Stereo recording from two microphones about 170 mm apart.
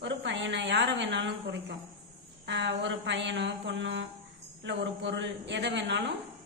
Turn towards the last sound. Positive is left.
turn(degrees=-90)